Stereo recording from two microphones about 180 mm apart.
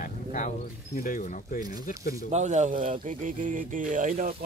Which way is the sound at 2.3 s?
40° right (ahead or behind).